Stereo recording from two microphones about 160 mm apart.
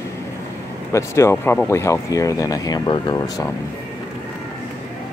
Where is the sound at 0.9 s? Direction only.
15° left (ahead or behind).